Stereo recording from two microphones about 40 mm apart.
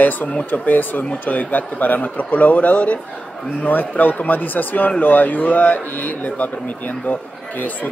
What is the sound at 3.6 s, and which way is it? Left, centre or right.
Speech, left.